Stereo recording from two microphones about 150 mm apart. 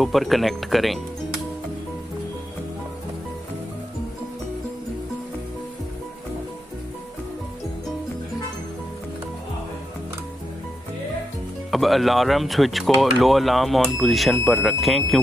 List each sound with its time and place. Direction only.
0.0 s speech: centre (ahead or behind)
11.7 s speech: centre (ahead or behind)